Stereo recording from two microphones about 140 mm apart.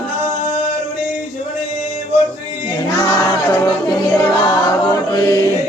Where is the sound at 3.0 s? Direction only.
25° left (ahead or behind).